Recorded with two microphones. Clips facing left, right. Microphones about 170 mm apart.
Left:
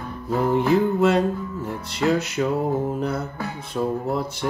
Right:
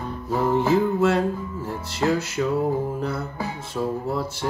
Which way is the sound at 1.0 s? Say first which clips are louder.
Left 1 dB; 20° left (ahead or behind).